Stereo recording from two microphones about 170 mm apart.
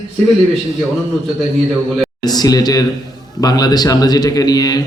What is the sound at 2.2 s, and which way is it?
A man's voice, 25° left (ahead or behind).